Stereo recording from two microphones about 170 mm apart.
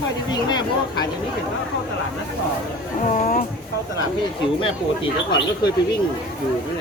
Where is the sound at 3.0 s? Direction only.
45° left (ahead or behind).